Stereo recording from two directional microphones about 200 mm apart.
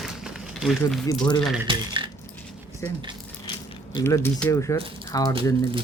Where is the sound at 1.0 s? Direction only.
20° left (ahead or behind).